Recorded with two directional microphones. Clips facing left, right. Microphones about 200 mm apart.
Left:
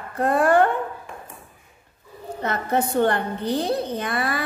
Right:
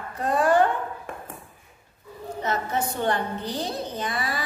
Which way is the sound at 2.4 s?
60° left (ahead or behind).